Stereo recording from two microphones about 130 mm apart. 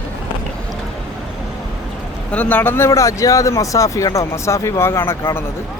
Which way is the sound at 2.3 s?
10° left (ahead or behind).